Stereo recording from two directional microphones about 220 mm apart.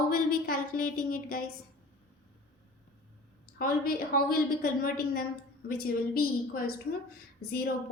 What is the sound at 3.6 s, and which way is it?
A woman's voice, 40° left (ahead or behind).